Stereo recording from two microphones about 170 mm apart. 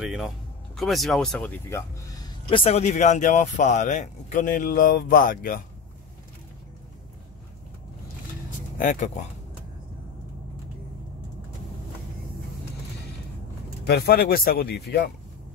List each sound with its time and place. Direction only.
0.0 s speech: centre (ahead or behind)
2.2 s speech: 30° left (ahead or behind); by 5.6 s 55° left (ahead or behind)
8.7 s speech: 50° left (ahead or behind)
13.8 s speech: 70° left (ahead or behind)